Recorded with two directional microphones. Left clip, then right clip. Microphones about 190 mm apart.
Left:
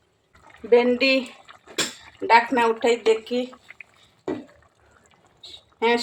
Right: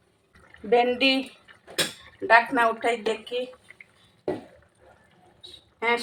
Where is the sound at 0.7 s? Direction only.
5° left (ahead or behind).